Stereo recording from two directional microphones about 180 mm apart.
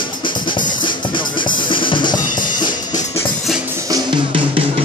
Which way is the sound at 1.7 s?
25° left (ahead or behind).